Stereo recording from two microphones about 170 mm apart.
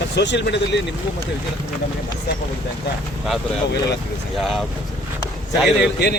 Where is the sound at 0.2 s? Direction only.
90° left.